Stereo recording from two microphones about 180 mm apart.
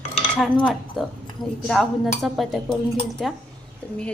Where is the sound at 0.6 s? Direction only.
Centre (ahead or behind).